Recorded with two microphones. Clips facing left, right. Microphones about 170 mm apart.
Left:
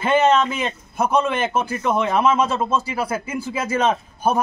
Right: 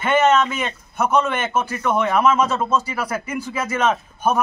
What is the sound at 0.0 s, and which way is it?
A man's voice, 30° left (ahead or behind).